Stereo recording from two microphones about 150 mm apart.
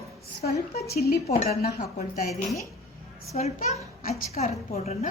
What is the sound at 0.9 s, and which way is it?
Speech, 90° left.